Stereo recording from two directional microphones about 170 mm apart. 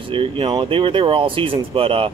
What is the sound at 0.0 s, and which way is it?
Speech, 30° right (ahead or behind).